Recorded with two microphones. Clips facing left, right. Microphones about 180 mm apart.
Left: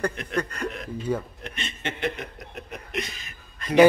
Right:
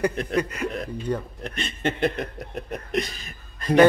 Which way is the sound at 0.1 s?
35° right (ahead or behind).